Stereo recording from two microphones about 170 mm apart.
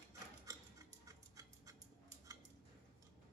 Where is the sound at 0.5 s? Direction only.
20° right (ahead or behind).